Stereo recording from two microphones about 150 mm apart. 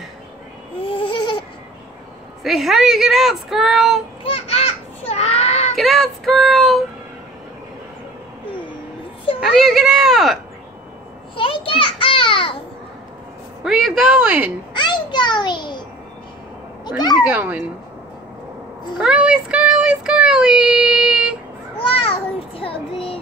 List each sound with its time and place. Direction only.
0.9 s a sound: 35° left (ahead or behind)
2.4 s speech: centre (ahead or behind)
4.2 s a sound: 40° left (ahead or behind)
5.8 s child singing: centre (ahead or behind)
9.4 s speech: centre (ahead or behind)
11.3 s children playing: 35° left (ahead or behind)
13.7 s speech: centre (ahead or behind)
14.7 s a child's voice: 30° left (ahead or behind)
16.8 s speech: 30° left (ahead or behind)
17.2 s speech: 10° right (ahead or behind)
18.9 s child singing: 5° right (ahead or behind)
21.7 s a sound: 40° left (ahead or behind)
22.6 s child singing: 35° left (ahead or behind)